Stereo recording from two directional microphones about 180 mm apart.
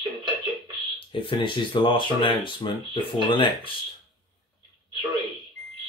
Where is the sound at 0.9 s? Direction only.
30° left (ahead or behind).